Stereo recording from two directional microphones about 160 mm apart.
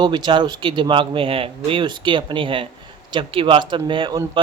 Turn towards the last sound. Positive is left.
turn(degrees=-30)  # may be behind; listen again after turning